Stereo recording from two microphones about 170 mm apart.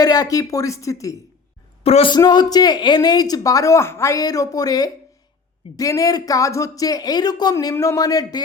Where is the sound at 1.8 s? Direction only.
35° left (ahead or behind).